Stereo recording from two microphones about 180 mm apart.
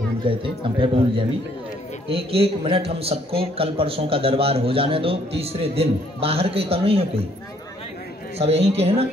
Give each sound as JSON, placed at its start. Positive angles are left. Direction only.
{"t": 0.2, "sound": "a man's voice", "side_deg": -30}
{"t": 8.4, "sound": "speech", "side_deg": -35}